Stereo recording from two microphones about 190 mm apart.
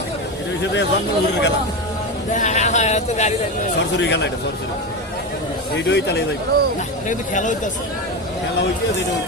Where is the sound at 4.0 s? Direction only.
65° left (ahead or behind).